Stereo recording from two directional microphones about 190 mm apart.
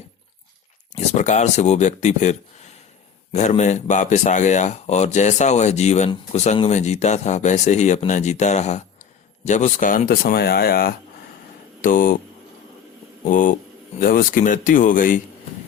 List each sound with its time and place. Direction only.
0.9 s speech: 40° left (ahead or behind)
13.2 s speech: 45° left (ahead or behind)